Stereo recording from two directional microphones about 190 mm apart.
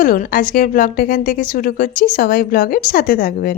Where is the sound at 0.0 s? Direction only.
45° left (ahead or behind).